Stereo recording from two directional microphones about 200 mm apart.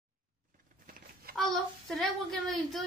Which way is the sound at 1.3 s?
Centre (ahead or behind).